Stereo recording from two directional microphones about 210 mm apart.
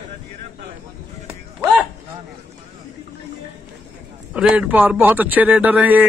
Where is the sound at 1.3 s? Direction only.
10° right (ahead or behind).